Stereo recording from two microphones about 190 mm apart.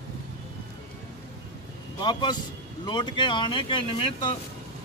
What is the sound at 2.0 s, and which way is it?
Speech, 25° left (ahead or behind).